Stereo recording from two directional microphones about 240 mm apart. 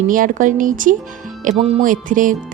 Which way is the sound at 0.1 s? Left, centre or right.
Right.